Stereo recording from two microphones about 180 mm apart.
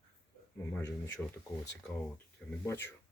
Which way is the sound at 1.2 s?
10° left (ahead or behind).